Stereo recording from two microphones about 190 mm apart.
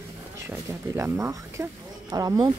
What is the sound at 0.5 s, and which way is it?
Speech, 15° right (ahead or behind).